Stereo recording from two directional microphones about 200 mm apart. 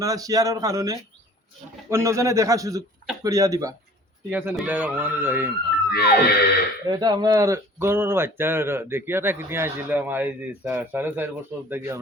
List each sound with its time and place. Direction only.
0.0 s speech: 15° right (ahead or behind)
5.9 s music: 55° left (ahead or behind)
6.8 s speech: 20° right (ahead or behind)